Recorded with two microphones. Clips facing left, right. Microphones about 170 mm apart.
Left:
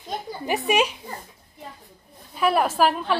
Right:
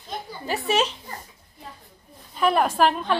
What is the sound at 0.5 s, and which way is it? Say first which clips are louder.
Speech: left 2 dB; 15° left (ahead or behind).